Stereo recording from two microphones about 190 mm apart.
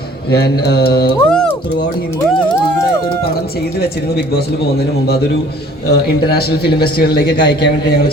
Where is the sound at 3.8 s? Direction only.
55° left (ahead or behind).